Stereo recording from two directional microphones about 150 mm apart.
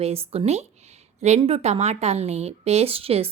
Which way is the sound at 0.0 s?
40° right (ahead or behind).